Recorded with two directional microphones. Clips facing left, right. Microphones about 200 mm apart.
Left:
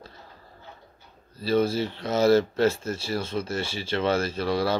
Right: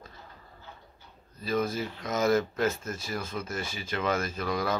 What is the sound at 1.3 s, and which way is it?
Speech, 30° left (ahead or behind).